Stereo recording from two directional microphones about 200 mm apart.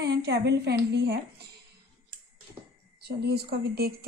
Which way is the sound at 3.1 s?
50° right (ahead or behind).